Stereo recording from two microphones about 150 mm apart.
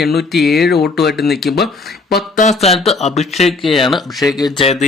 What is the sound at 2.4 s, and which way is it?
Speech, 45° left (ahead or behind).